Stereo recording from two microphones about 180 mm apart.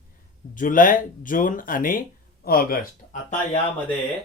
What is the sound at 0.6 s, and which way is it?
Speech, 50° left (ahead or behind).